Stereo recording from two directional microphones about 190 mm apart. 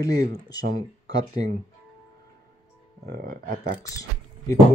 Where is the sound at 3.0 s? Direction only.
50° right (ahead or behind).